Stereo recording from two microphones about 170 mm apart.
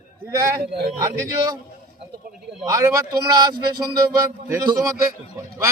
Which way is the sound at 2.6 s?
20° right (ahead or behind).